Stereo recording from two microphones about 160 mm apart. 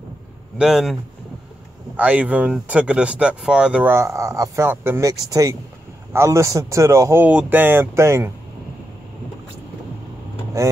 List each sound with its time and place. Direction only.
0.6 s speech: centre (ahead or behind)
2.0 s speech: 10° right (ahead or behind)
10.6 s speech: 20° right (ahead or behind)